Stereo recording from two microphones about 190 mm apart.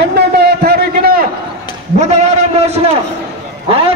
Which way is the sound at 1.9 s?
35° right (ahead or behind).